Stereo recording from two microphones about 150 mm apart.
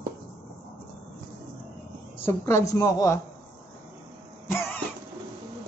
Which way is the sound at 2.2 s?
20° left (ahead or behind).